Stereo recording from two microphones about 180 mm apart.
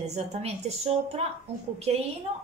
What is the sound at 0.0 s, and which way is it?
A woman's voice, 40° right (ahead or behind).